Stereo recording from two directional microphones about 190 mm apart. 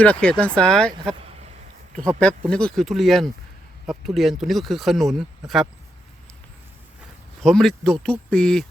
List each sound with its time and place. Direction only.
0.0 s speech: 5° left (ahead or behind)
1.2 s a sound: 30° right (ahead or behind)
2.0 s speech: 5° left (ahead or behind)
7.4 s speech: centre (ahead or behind)